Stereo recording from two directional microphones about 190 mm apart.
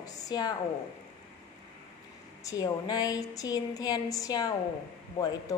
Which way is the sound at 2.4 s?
20° left (ahead or behind).